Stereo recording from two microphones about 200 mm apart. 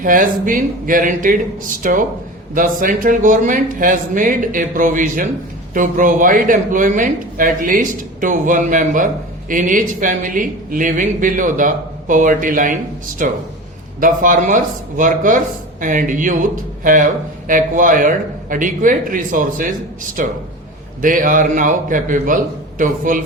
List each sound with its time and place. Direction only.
0.0 s a man's voice: 40° right (ahead or behind)